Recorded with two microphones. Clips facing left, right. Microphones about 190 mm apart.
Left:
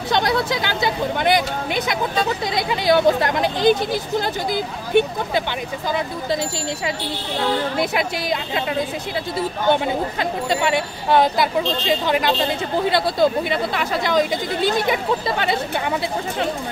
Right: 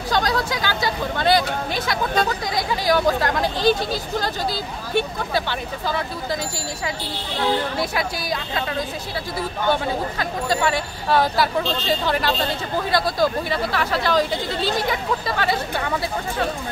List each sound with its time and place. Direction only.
0.1 s speech: 20° left (ahead or behind)
7.7 s speech: 20° left (ahead or behind)